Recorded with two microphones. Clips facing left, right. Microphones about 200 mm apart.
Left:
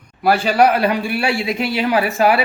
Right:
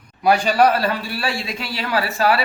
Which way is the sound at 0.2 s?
5° left (ahead or behind).